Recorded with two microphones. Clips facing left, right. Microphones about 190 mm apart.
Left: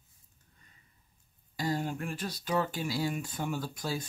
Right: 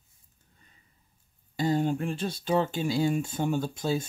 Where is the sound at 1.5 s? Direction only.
25° right (ahead or behind).